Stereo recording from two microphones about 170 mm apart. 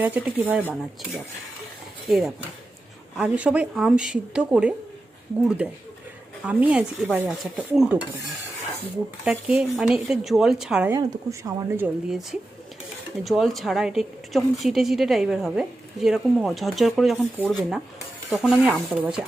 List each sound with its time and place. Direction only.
0.0 s stir: 10° right (ahead or behind)
2.0 s a woman's voice: centre (ahead or behind)
5.6 s stir: 5° right (ahead or behind)
9.2 s a woman's voice: 5° right (ahead or behind)
10.9 s stir: 20° right (ahead or behind)
12.0 s a woman's voice: centre (ahead or behind)